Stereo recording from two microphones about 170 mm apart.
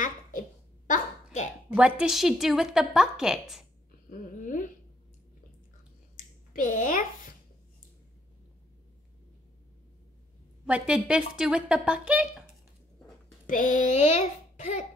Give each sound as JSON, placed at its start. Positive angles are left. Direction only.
{"t": 0.0, "sound": "a sound", "side_deg": 50}
{"t": 1.8, "sound": "speech", "side_deg": -5}
{"t": 4.1, "sound": "speech", "side_deg": 50}
{"t": 6.5, "sound": "a child's voice", "side_deg": 50}
{"t": 10.6, "sound": "speech", "side_deg": -5}
{"t": 13.5, "sound": "a child's voice", "side_deg": 50}